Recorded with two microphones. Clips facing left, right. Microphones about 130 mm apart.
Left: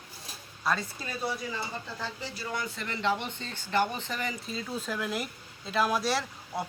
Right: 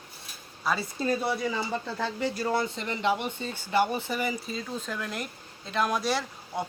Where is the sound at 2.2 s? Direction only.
50° right (ahead or behind).